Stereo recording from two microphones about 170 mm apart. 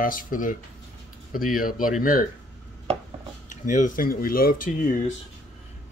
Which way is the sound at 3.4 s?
50° left (ahead or behind).